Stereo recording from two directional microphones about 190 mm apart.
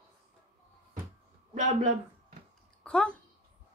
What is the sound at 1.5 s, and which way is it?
Speech, 40° right (ahead or behind).